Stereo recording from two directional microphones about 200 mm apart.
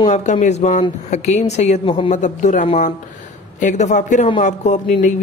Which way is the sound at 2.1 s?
35° left (ahead or behind).